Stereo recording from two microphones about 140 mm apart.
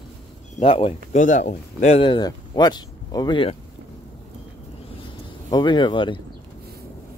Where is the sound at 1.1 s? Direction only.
60° left (ahead or behind).